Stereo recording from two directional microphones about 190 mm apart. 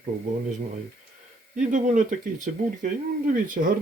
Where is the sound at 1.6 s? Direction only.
40° right (ahead or behind).